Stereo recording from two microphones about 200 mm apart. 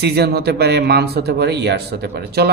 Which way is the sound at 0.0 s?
55° right (ahead or behind).